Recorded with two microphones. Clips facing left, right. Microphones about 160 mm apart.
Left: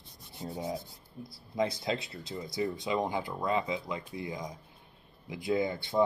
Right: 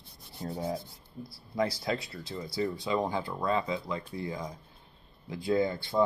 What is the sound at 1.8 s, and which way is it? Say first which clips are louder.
Speech: right 1 dB; 25° left (ahead or behind).